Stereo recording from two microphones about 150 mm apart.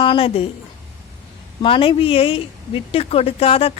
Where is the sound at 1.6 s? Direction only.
35° left (ahead or behind).